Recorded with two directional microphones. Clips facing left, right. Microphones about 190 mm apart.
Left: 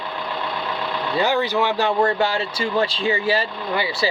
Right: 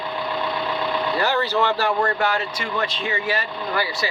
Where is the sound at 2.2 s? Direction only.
30° left (ahead or behind).